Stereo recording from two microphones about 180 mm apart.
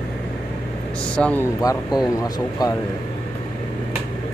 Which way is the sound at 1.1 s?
10° left (ahead or behind).